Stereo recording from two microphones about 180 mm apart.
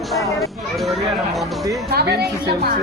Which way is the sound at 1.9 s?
65° right (ahead or behind).